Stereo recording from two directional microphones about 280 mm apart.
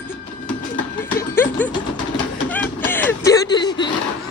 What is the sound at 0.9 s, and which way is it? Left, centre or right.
Music, centre.